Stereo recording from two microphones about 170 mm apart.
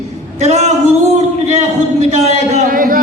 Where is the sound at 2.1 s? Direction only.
45° right (ahead or behind).